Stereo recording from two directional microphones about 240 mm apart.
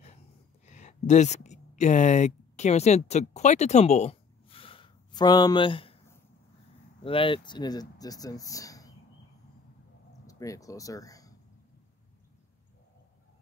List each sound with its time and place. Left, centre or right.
0.7 s speech: left
7.0 s speech: left
10.2 s speech: centre